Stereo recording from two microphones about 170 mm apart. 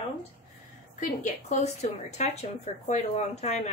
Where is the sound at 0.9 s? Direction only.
45° left (ahead or behind).